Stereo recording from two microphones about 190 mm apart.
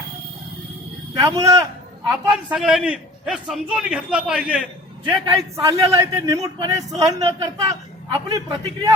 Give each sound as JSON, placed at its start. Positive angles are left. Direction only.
{"t": 1.1, "sound": "a man's voice", "side_deg": -15}
{"t": 2.5, "sound": "a man's voice", "side_deg": 0}
{"t": 5.0, "sound": "a man's voice", "side_deg": -20}